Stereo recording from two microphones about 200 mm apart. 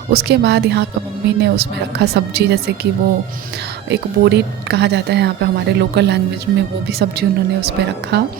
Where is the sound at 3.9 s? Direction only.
55° right (ahead or behind).